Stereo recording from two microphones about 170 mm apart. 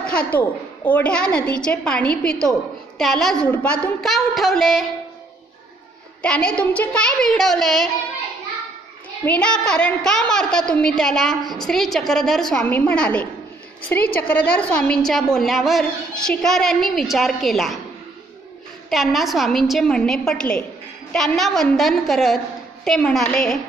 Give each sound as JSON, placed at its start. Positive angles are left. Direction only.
{"t": 0.0, "sound": "a woman's voice", "side_deg": 5}
{"t": 6.2, "sound": "a woman's voice", "side_deg": 5}
{"t": 9.4, "sound": "a woman's voice", "side_deg": 5}
{"t": 18.9, "sound": "a woman's voice", "side_deg": 0}